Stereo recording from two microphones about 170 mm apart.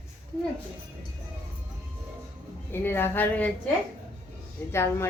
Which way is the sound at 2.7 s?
15° left (ahead or behind).